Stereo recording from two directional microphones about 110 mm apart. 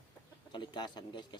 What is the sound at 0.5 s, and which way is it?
Speech, 45° left (ahead or behind).